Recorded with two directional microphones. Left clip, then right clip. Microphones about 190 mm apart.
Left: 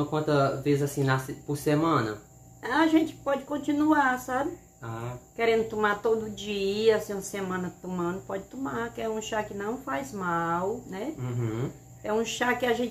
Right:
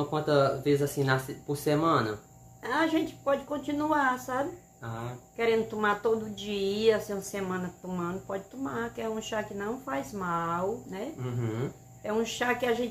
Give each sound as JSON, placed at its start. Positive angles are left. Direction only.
{"t": 0.1, "sound": "speech", "side_deg": -10}
{"t": 2.6, "sound": "speech", "side_deg": 5}